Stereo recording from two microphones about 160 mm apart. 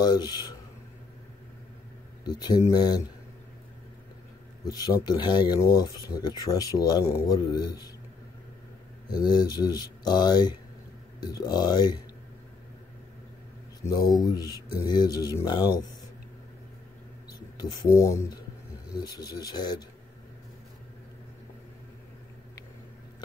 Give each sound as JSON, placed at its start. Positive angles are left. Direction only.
{"t": 0.0, "sound": "speech", "side_deg": 25}
{"t": 2.2, "sound": "speech", "side_deg": 25}
{"t": 4.6, "sound": "speech", "side_deg": 25}
{"t": 9.1, "sound": "speech", "side_deg": 25}
{"t": 13.8, "sound": "speech", "side_deg": 25}
{"t": 17.6, "sound": "speech", "side_deg": 20}